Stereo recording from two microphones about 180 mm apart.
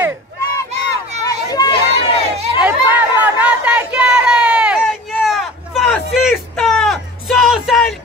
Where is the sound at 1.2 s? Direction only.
20° left (ahead or behind).